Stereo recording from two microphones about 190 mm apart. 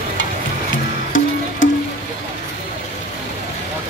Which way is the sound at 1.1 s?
90° left.